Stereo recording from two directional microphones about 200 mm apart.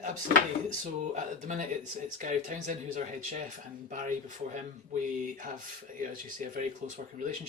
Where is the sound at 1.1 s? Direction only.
35° right (ahead or behind).